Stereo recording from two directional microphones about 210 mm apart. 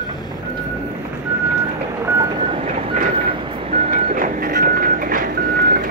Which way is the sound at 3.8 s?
40° right (ahead or behind).